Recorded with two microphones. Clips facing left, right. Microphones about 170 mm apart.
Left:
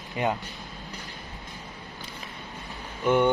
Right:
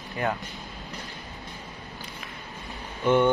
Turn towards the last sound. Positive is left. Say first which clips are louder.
# right 1 dB
turn(degrees=10)  # may be behind; listen again after turning